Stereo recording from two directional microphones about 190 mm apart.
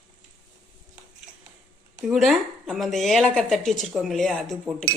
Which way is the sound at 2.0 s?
Centre (ahead or behind).